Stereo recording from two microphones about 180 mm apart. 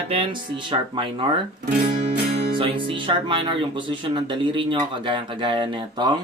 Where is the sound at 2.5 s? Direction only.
30° right (ahead or behind).